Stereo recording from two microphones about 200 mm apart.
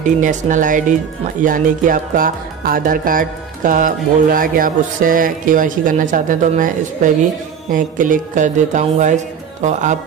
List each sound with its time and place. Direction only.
0.2 s speech: 40° right (ahead or behind)
1.4 s music: 45° right (ahead or behind)
7.7 s speech: 40° right (ahead or behind)